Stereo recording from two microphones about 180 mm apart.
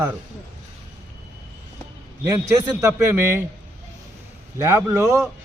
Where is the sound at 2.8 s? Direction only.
15° right (ahead or behind).